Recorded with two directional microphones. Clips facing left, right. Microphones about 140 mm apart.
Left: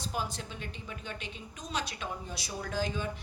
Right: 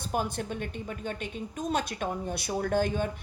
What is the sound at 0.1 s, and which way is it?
A woman's voice, 50° right (ahead or behind).